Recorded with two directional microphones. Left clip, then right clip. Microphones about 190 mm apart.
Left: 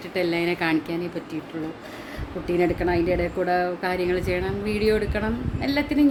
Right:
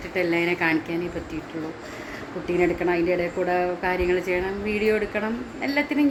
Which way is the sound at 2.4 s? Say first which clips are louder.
Even; 15° left (ahead or behind).